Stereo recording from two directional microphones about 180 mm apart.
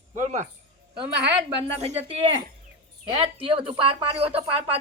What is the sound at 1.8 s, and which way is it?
Speech, 35° right (ahead or behind).